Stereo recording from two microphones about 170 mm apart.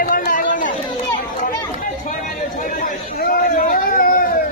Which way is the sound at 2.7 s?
55° left (ahead or behind).